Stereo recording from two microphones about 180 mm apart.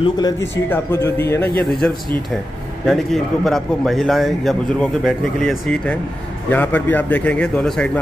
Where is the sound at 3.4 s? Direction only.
Centre (ahead or behind).